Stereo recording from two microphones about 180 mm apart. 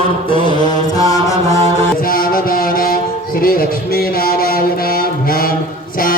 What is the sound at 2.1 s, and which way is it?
Music, 55° left (ahead or behind).